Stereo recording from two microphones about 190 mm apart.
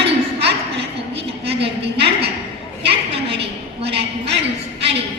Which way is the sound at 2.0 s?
60° right (ahead or behind).